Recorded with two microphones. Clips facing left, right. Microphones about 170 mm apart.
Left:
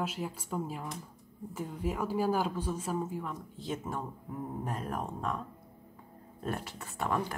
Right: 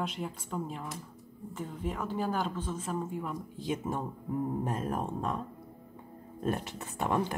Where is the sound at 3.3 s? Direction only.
15° right (ahead or behind).